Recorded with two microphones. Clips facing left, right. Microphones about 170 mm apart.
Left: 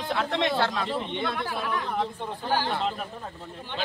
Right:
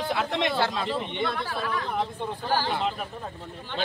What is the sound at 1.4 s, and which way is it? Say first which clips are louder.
Speech: even; 15° left (ahead or behind).